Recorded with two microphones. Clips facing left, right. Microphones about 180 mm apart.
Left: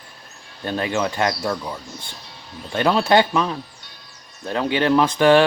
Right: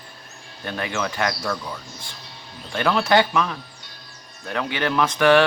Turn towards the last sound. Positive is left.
turn(degrees=30)  # may be behind; listen again after turning